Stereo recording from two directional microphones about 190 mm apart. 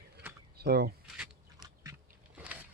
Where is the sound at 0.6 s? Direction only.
55° right (ahead or behind).